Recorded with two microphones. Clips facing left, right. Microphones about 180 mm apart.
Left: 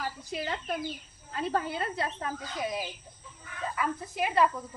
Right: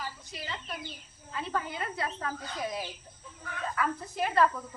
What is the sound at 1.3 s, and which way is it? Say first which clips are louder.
Speech: left 4 dB; 40° left (ahead or behind).